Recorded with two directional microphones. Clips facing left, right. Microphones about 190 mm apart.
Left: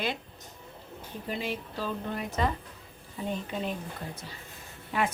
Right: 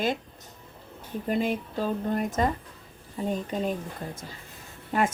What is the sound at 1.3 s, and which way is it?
A woman's voice, 50° right (ahead or behind).